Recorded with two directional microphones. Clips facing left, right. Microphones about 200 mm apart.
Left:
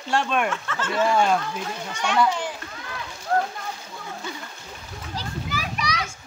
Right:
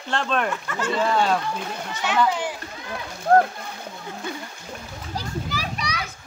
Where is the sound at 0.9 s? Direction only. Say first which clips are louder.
Left 1 dB; centre (ahead or behind).